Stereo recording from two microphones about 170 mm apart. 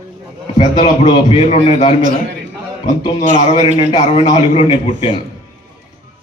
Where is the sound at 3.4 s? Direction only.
35° left (ahead or behind).